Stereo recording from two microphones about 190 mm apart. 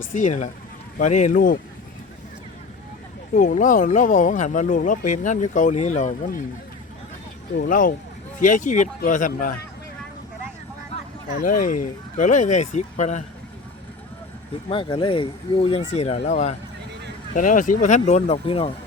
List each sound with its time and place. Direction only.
0.1 s speech: 40° left (ahead or behind)
3.3 s speech: 40° left (ahead or behind)
7.5 s speech: 45° left (ahead or behind)
11.3 s speech: 50° left (ahead or behind)
14.7 s speech: 25° left (ahead or behind)